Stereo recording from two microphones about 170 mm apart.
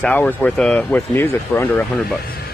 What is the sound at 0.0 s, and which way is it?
Speech, 5° left (ahead or behind).